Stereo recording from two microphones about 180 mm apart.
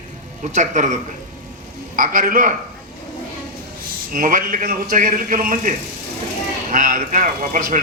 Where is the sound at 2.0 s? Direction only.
50° right (ahead or behind).